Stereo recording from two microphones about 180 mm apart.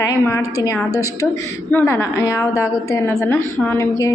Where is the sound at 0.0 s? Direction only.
20° left (ahead or behind).